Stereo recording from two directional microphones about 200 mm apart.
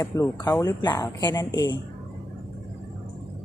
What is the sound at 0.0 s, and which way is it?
A woman's voice, 15° left (ahead or behind).